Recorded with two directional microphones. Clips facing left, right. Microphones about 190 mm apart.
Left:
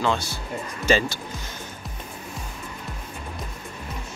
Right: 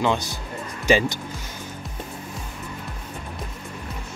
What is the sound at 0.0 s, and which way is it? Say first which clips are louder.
Speech: right 2 dB; 15° right (ahead or behind).